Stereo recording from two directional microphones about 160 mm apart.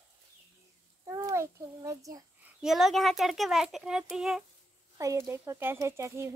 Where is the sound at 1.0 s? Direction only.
20° right (ahead or behind).